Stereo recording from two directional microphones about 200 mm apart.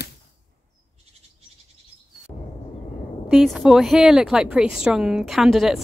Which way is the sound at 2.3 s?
20° left (ahead or behind).